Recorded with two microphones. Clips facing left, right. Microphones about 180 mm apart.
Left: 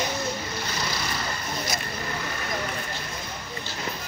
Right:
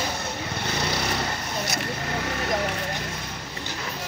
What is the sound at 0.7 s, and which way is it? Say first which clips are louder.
Vehicle: right 6 dB; 65° right (ahead or behind).